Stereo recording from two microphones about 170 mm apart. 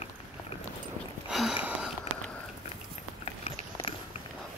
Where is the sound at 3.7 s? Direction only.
30° left (ahead or behind).